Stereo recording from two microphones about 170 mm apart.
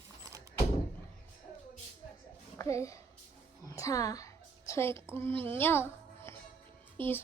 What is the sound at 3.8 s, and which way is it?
Music, 20° left (ahead or behind).